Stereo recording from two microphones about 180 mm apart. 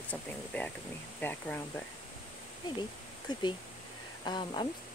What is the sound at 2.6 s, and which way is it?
Speech, 25° left (ahead or behind).